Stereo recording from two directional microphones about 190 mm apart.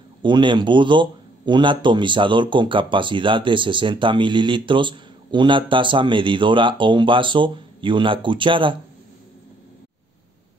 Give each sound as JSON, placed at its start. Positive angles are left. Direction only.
{"t": 0.2, "sound": "a man's voice", "side_deg": -25}